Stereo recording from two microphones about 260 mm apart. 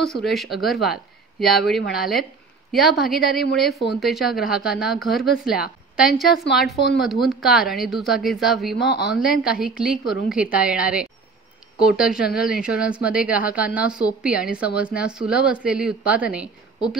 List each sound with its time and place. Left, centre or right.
0.0 s speech: centre
8.7 s speech: left
9.1 s speech: centre